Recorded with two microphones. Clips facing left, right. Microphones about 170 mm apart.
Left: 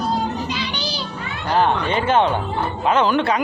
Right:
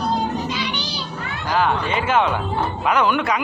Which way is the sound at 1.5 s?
30° left (ahead or behind).